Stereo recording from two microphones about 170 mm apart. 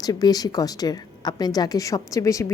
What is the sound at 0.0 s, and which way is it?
A woman's voice, 20° left (ahead or behind).